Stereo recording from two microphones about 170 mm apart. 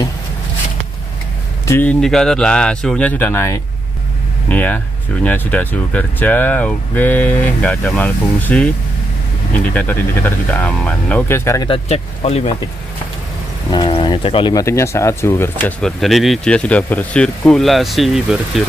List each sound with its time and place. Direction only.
1.7 s speech: 10° left (ahead or behind)
11.7 s speech: 40° left (ahead or behind)
13.7 s speech: 30° left (ahead or behind); by 18.6 s centre (ahead or behind)